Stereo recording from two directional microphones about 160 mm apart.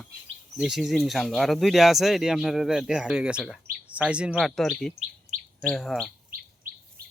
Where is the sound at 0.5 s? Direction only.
Centre (ahead or behind).